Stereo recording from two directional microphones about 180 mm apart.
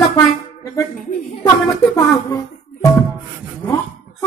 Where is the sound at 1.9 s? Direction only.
20° left (ahead or behind).